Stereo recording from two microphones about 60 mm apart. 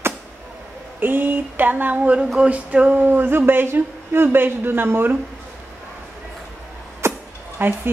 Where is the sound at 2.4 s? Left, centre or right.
Right.